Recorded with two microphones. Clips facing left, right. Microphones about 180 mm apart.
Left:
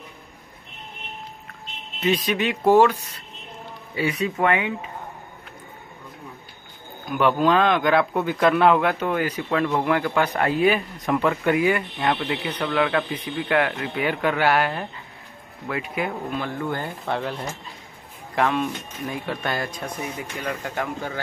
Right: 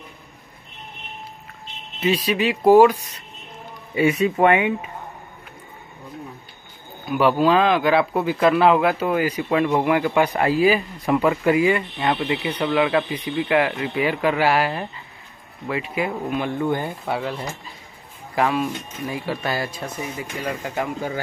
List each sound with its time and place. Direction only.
2.0 s speech: 5° right (ahead or behind)
3.9 s speech: 25° right (ahead or behind)
7.1 s speech: 5° right (ahead or behind)
16.3 s speech: 20° right (ahead or behind)